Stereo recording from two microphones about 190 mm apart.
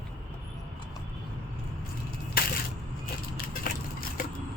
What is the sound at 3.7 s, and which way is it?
Crushing, 50° left (ahead or behind).